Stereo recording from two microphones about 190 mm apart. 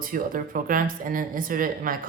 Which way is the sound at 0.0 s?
45° right (ahead or behind).